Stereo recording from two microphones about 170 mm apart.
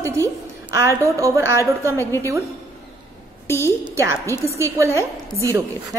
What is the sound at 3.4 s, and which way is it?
Speech, 15° left (ahead or behind).